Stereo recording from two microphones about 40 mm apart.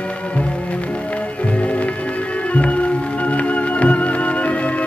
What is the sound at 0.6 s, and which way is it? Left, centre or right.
Music, left.